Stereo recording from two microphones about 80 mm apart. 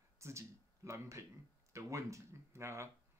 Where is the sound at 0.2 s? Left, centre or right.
Right.